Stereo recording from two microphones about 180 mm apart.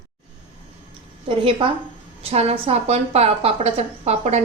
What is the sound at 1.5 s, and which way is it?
A woman's voice, 30° right (ahead or behind).